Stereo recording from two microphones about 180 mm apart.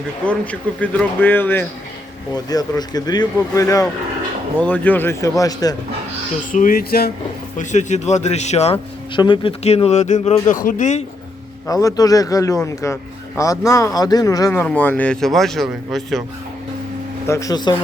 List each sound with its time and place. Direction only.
0.8 s a man's voice: 10° left (ahead or behind)
6.5 s a sound: 50° left (ahead or behind)
7.6 s speech: 40° left (ahead or behind)
10.5 s a sound: 50° left (ahead or behind)
11.7 s a man's voice: 20° left (ahead or behind); by 16.2 s centre (ahead or behind)
17.2 s a man's voice: 15° left (ahead or behind)